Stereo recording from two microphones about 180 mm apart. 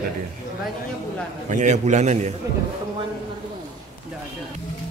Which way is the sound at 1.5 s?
40° right (ahead or behind).